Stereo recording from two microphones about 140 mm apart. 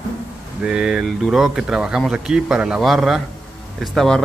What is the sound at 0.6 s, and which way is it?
Speech, 5° right (ahead or behind).